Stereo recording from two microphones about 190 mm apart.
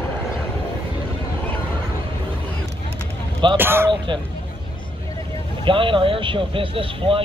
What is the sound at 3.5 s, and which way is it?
Speech, 10° right (ahead or behind).